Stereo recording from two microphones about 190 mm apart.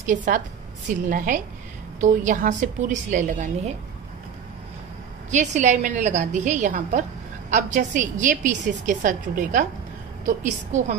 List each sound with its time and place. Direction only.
0.0 s a woman's voice: 45° right (ahead or behind)
5.3 s a woman's voice: 40° right (ahead or behind)